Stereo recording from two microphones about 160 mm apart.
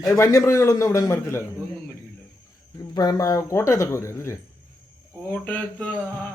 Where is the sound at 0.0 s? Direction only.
20° left (ahead or behind).